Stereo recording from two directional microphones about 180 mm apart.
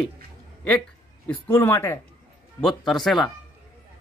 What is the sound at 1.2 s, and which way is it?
Speech, 10° left (ahead or behind).